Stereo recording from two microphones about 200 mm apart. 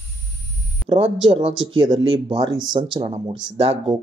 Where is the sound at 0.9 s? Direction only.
25° right (ahead or behind).